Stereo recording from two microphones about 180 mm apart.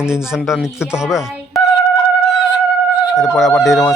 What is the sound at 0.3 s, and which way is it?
Speech, centre (ahead or behind).